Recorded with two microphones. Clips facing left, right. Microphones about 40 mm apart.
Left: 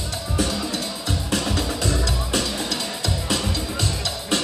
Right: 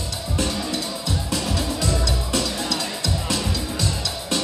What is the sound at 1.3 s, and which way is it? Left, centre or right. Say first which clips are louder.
Music: left 2 dB; left.